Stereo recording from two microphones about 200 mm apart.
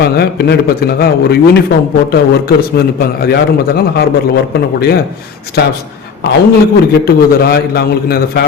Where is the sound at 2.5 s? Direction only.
50° left (ahead or behind).